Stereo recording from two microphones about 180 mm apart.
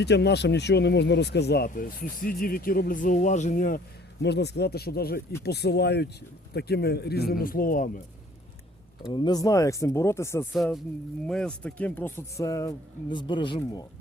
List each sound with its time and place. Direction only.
0.0 s speech: 70° left (ahead or behind); by 3.8 s 50° left (ahead or behind)
4.2 s speech: 70° left (ahead or behind); by 8.0 s 50° left (ahead or behind)
9.0 s speech: 25° left (ahead or behind)
10.5 s speech: centre (ahead or behind); by 13.6 s 25° left (ahead or behind)